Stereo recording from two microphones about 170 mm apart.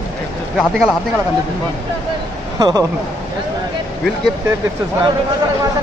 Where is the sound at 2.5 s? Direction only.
20° right (ahead or behind).